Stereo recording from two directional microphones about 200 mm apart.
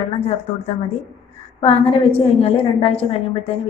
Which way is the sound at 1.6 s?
30° left (ahead or behind).